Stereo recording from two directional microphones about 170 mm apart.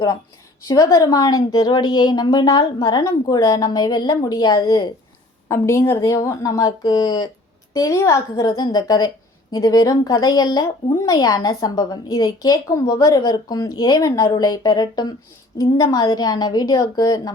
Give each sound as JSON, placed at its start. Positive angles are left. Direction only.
{"t": 0.7, "sound": "speech", "side_deg": 20}